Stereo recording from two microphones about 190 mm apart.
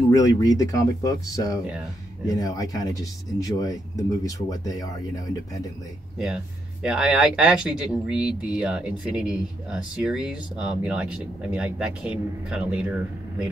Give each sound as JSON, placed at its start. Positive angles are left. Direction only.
{"t": 0.1, "sound": "speech", "side_deg": 20}
{"t": 6.1, "sound": "speech", "side_deg": -5}